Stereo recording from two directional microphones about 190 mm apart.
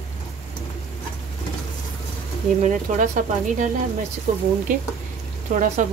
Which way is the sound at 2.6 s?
40° right (ahead or behind).